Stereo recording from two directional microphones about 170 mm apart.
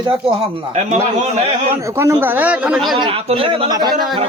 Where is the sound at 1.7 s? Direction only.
15° right (ahead or behind).